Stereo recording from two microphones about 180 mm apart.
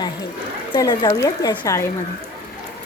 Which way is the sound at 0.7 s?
20° left (ahead or behind).